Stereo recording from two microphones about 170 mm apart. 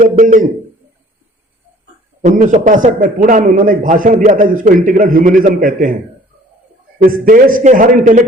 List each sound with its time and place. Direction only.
0.0 s a man's voice: 45° right (ahead or behind)
2.2 s a man's voice: 50° right (ahead or behind)
7.0 s a man's voice: 55° right (ahead or behind)